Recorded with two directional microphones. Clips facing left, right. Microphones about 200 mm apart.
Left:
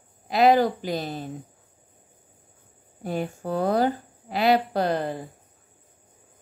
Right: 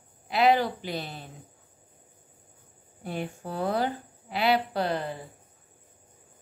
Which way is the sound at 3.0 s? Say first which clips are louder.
Left 5 dB; 40° left (ahead or behind).